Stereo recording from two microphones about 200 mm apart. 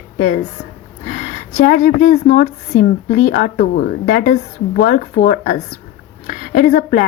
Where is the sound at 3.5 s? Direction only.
50° left (ahead or behind).